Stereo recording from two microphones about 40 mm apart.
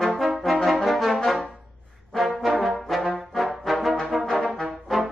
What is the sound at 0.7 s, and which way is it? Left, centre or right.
Brass instrument, centre.